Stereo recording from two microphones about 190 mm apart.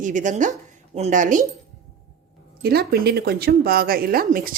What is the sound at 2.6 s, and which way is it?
A woman's voice, 55° right (ahead or behind).